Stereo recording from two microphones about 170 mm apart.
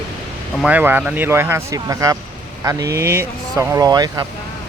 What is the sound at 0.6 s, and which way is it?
Speech, 10° right (ahead or behind).